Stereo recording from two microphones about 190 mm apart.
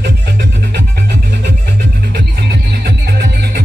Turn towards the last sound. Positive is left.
turn(degrees=-60)  # may be behind; listen again after turning